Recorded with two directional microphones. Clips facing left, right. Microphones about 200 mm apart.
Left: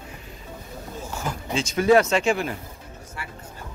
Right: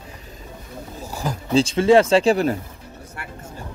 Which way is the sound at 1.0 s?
40° right (ahead or behind).